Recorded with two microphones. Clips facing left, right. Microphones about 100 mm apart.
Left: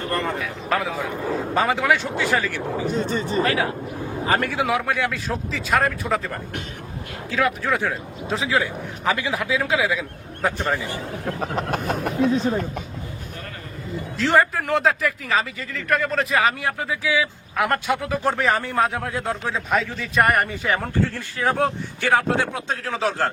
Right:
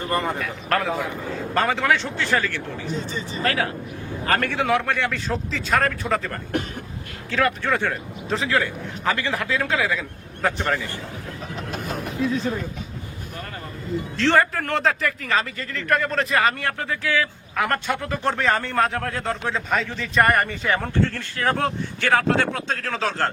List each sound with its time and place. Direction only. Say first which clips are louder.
0.3 s a man's voice: even; centre (ahead or behind)
2.8 s speech: left 7 dB; 50° left (ahead or behind)
3.4 s a man's voice: left 2 dB; 15° left (ahead or behind)
11.3 s speech: left 9 dB; 60° left (ahead or behind)
12.2 s speech: left 3 dB; 25° left (ahead or behind)
14.2 s a man's voice: left 1 dB; 5° left (ahead or behind)